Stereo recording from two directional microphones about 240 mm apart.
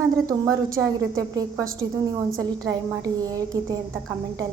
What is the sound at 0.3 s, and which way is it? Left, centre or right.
A woman's voice, centre.